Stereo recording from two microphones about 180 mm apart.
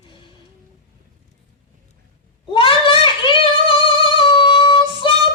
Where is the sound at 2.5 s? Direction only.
30° left (ahead or behind).